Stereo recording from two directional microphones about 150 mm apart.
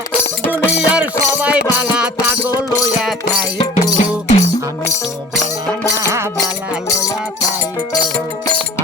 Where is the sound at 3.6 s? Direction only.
50° left (ahead or behind).